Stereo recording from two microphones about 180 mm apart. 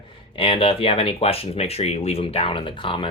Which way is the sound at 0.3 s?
30° left (ahead or behind).